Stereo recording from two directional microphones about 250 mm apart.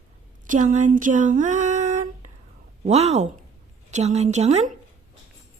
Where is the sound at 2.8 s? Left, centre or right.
Right.